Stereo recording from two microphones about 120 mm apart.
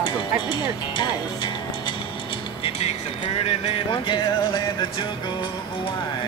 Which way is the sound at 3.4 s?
45° left (ahead or behind).